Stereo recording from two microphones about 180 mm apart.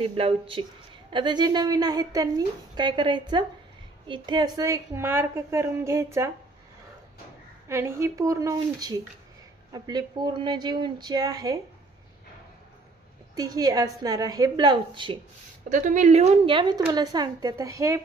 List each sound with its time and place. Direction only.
0.0 s a woman's voice: 30° right (ahead or behind); by 6.3 s 15° right (ahead or behind)
7.6 s a woman's voice: 15° right (ahead or behind)
13.4 s a woman's voice: 20° right (ahead or behind)
15.7 s a woman's voice: 45° right (ahead or behind); by 18.0 s 15° right (ahead or behind)